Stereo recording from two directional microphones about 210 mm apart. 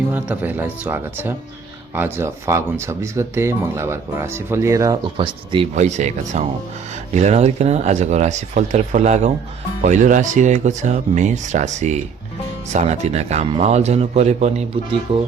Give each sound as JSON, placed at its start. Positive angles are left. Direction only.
{"t": 0.1, "sound": "speech", "side_deg": -10}